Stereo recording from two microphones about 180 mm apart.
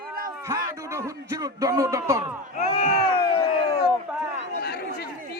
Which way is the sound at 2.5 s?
40° left (ahead or behind).